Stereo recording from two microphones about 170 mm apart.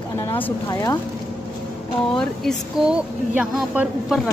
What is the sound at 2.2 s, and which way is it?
Speech, centre (ahead or behind).